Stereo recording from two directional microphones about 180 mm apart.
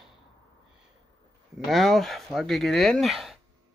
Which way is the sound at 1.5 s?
Centre (ahead or behind).